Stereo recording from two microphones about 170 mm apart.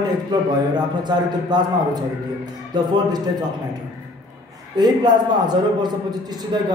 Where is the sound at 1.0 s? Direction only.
25° right (ahead or behind).